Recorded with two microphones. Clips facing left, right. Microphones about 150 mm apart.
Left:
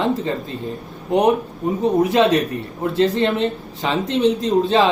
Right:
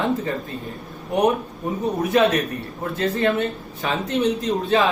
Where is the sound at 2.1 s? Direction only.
30° left (ahead or behind).